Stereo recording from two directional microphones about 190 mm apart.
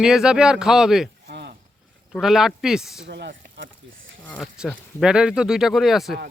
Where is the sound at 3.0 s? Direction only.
65° right (ahead or behind); by 4.2 s 90° right.